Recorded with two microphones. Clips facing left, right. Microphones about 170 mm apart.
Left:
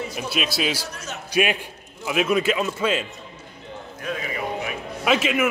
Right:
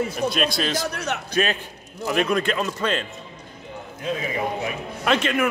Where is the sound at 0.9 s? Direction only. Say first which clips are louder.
Right 7 dB; 65° right (ahead or behind).